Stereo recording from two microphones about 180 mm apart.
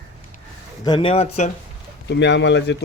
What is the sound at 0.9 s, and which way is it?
Speech, 30° left (ahead or behind).